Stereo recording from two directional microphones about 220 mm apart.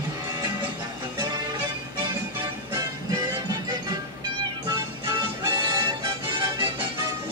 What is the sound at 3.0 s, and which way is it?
Music, 20° right (ahead or behind).